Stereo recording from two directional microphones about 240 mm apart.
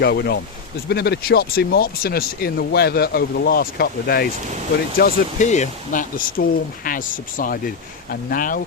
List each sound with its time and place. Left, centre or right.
0.0 s speech: left